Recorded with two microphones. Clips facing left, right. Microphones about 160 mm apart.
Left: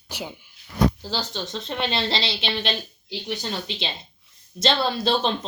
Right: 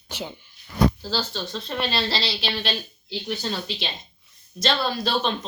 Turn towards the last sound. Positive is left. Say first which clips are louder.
# left 2 dB
turn(degrees=25)  # may be behind; listen again after turning